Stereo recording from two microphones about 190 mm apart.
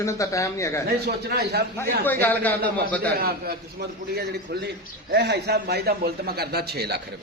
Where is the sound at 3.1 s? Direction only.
55° right (ahead or behind).